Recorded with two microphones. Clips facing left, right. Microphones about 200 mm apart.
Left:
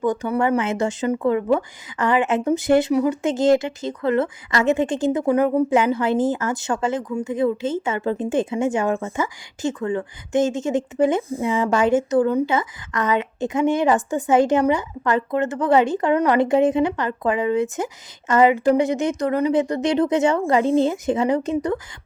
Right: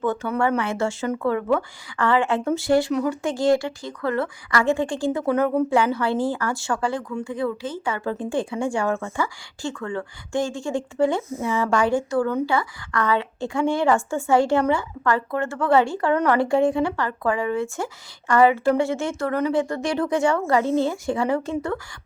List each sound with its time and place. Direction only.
0.0 s a woman's voice: 15° left (ahead or behind)